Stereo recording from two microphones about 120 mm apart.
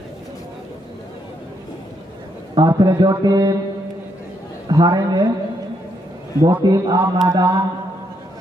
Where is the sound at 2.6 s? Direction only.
35° right (ahead or behind).